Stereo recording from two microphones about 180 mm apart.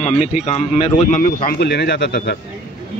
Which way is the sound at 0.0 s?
40° left (ahead or behind).